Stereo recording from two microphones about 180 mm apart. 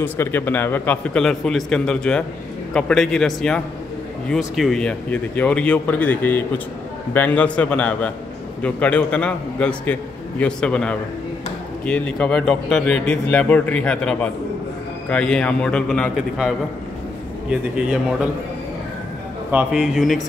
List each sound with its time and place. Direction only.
0.0 s a man's voice: 10° left (ahead or behind)
19.5 s a man's voice: 5° right (ahead or behind)